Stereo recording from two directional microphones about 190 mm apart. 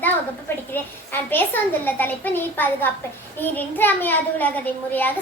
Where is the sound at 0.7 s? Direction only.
10° left (ahead or behind).